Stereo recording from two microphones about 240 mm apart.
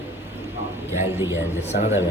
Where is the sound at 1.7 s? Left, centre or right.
Left.